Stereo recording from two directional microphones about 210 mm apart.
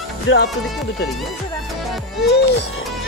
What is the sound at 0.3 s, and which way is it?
Speech, 70° left (ahead or behind).